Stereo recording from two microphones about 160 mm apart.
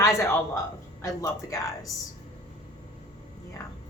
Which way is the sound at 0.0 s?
20° left (ahead or behind).